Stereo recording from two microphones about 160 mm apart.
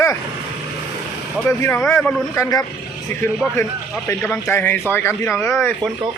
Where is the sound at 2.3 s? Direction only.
20° left (ahead or behind).